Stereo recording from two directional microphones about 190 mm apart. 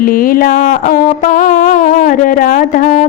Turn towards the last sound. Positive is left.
turn(degrees=45)  # may be behind; listen again after turning